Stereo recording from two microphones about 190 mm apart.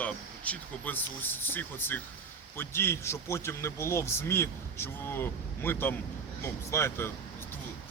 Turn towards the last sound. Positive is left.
turn(degrees=10)  # may be behind; listen again after turning